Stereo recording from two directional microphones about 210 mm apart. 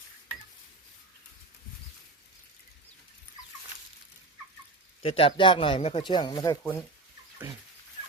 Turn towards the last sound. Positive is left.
turn(degrees=15)  # may be behind; listen again after turning